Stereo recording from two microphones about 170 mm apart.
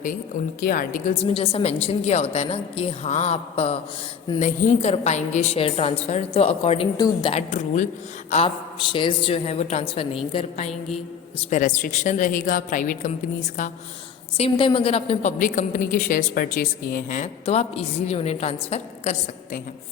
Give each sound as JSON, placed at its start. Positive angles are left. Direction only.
{"t": 0.6, "sound": "a woman's voice", "side_deg": 55}
{"t": 10.7, "sound": "mantra", "side_deg": 0}
{"t": 11.3, "sound": "a woman's voice", "side_deg": 45}
{"t": 14.3, "sound": "a woman's voice", "side_deg": 35}
{"t": 15.4, "sound": "a woman's voice", "side_deg": 50}